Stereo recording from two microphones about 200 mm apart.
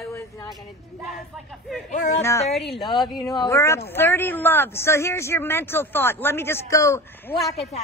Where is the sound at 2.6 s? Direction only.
Centre (ahead or behind).